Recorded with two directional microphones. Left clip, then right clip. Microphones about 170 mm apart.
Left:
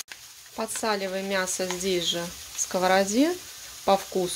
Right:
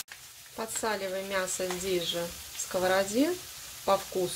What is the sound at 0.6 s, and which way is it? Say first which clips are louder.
Speech: left 4 dB; 25° left (ahead or behind).